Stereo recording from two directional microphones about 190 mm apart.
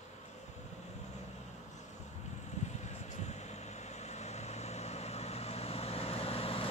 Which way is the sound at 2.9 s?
35° left (ahead or behind).